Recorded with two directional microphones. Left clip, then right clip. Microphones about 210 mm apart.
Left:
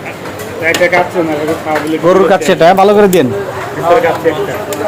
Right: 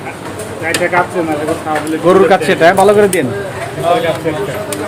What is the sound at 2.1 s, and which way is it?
Speech, 10° left (ahead or behind).